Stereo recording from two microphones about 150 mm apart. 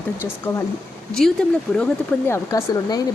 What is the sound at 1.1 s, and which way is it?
Speech, 5° left (ahead or behind).